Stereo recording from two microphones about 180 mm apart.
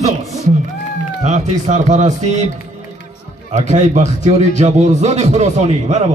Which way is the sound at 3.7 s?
40° right (ahead or behind).